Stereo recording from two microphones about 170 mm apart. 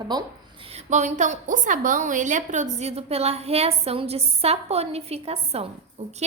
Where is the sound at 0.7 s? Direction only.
45° right (ahead or behind).